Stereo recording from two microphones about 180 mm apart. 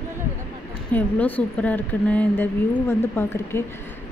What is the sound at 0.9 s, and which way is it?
Speech, 10° left (ahead or behind).